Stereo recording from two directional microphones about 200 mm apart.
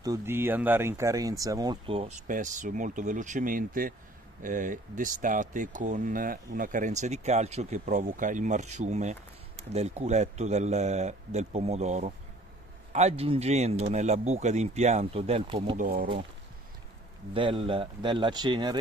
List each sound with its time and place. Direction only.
0.0 s speech: 15° right (ahead or behind)
15.8 s speech: 45° right (ahead or behind)
17.3 s speech: 25° right (ahead or behind)